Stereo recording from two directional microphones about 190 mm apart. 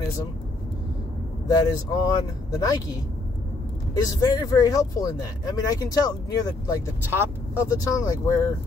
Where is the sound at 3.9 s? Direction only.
20° left (ahead or behind).